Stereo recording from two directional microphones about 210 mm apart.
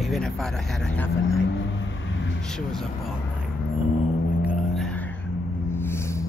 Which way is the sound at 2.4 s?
Centre (ahead or behind).